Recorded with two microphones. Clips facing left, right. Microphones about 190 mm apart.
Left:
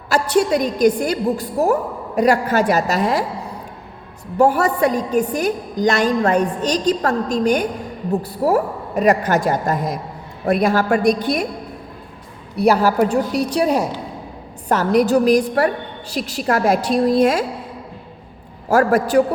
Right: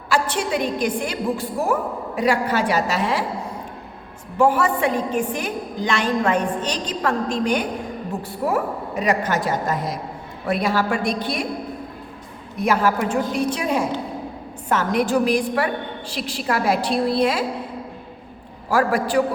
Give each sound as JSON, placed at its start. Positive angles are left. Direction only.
{"t": 0.1, "sound": "a woman's voice", "side_deg": 40}
{"t": 4.4, "sound": "a woman's voice", "side_deg": 40}
{"t": 12.5, "sound": "a woman's voice", "side_deg": 35}
{"t": 18.7, "sound": "a woman's voice", "side_deg": 45}